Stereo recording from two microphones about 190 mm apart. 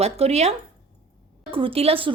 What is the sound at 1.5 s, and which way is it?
Speech, 30° right (ahead or behind).